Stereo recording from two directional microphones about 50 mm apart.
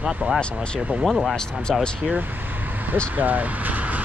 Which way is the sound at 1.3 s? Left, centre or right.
Centre.